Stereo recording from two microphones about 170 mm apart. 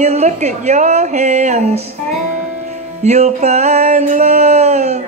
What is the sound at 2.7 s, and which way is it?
Music, 40° right (ahead or behind).